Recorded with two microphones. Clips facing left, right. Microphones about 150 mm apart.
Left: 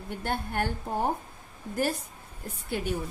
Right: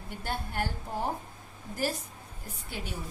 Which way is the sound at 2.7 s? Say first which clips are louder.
Left 8 dB; 55° left (ahead or behind).